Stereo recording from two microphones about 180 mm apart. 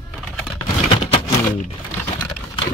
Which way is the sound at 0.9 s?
35° left (ahead or behind).